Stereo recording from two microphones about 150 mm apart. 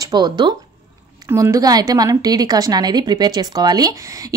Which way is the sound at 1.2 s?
20° right (ahead or behind).